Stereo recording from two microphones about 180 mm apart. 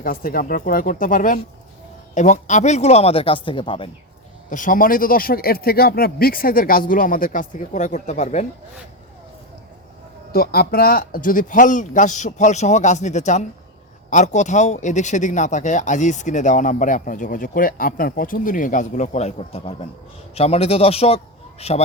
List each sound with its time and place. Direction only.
0.0 s speech: 55° left (ahead or behind); by 3.8 s 30° left (ahead or behind)
4.4 s speech: 45° left (ahead or behind)
10.3 s speech: 60° left (ahead or behind); by 21.8 s 35° left (ahead or behind)